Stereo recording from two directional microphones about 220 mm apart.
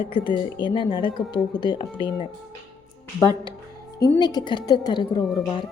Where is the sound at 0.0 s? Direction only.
25° left (ahead or behind).